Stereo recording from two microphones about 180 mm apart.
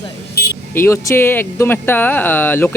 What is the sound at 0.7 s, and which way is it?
Speech, 15° left (ahead or behind).